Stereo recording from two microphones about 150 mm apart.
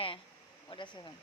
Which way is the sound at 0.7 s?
30° left (ahead or behind).